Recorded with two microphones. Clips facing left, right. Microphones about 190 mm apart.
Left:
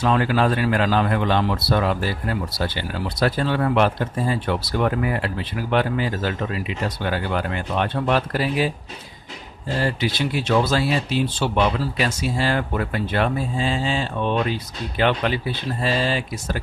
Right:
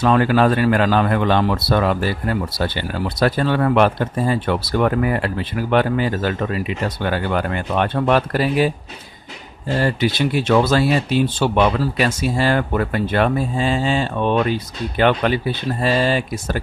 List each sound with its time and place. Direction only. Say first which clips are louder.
0.0 s speech: right 4 dB; 55° right (ahead or behind)
9.8 s speech: right 4 dB; 55° right (ahead or behind)